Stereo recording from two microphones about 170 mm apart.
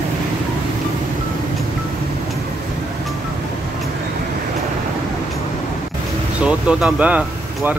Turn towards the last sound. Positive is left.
turn(degrees=-10)  # may be behind; listen again after turning